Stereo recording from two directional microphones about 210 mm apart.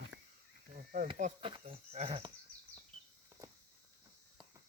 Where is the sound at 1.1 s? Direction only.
30° right (ahead or behind).